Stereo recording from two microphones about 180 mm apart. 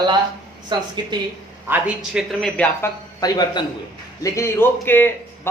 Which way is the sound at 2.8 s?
20° left (ahead or behind).